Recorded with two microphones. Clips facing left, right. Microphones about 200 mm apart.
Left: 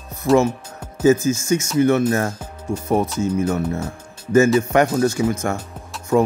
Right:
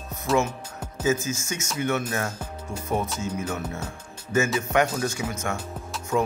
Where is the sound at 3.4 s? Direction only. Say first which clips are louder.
Left 9 dB; 35° left (ahead or behind).